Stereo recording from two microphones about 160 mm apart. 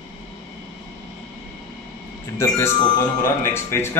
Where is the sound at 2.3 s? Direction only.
20° left (ahead or behind).